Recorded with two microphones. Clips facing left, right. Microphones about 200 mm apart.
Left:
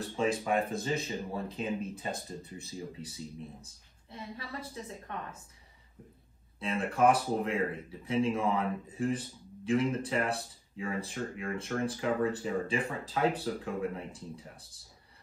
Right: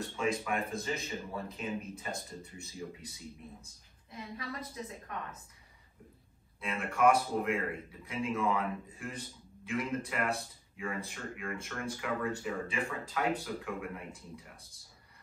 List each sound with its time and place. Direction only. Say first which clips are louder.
0.2 s speech: left 4 dB; 30° left (ahead or behind)
4.1 s a woman's voice: even; 30° left (ahead or behind)
6.6 s speech: left 1 dB; 30° left (ahead or behind)